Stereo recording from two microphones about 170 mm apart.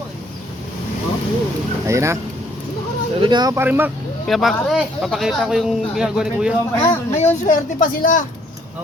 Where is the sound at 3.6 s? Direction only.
10° right (ahead or behind).